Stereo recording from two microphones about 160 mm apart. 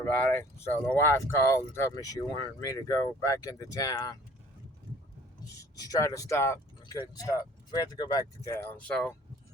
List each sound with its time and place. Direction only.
0.0 s speech: 10° left (ahead or behind)
5.7 s speech: 25° left (ahead or behind); by 9.1 s 5° left (ahead or behind)